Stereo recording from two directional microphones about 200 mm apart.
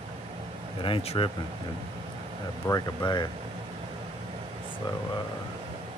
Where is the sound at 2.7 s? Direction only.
20° left (ahead or behind).